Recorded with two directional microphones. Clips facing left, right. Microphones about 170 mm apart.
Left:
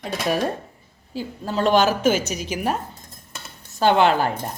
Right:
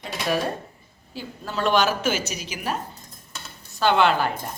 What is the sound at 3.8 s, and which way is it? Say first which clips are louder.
Speech: left 2 dB; 45° left (ahead or behind).